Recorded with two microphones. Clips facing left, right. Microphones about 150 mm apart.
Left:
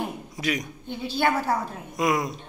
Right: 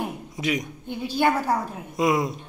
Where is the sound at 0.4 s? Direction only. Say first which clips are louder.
Right 2 dB; 20° right (ahead or behind).